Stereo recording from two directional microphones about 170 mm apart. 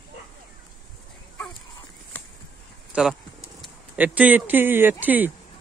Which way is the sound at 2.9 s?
5° right (ahead or behind).